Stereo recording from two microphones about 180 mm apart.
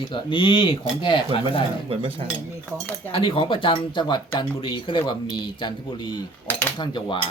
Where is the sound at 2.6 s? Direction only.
10° left (ahead or behind).